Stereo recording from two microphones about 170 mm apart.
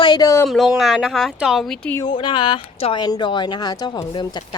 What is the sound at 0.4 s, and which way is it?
Speech, centre (ahead or behind).